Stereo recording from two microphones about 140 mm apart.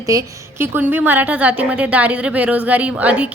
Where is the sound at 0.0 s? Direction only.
25° right (ahead or behind).